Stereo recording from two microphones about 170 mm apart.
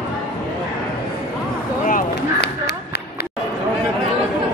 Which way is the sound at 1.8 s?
55° left (ahead or behind).